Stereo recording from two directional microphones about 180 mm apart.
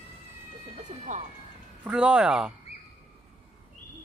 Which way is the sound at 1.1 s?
45° right (ahead or behind).